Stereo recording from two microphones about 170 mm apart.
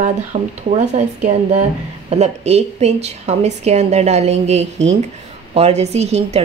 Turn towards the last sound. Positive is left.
turn(degrees=-40)  # may be behind; listen again after turning